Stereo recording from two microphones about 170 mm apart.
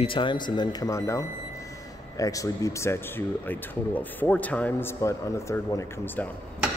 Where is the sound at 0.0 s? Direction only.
30° left (ahead or behind); by 6.2 s 15° left (ahead or behind).